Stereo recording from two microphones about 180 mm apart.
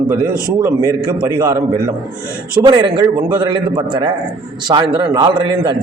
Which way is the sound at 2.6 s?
25° right (ahead or behind).